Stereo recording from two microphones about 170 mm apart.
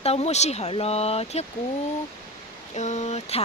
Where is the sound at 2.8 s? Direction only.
40° left (ahead or behind).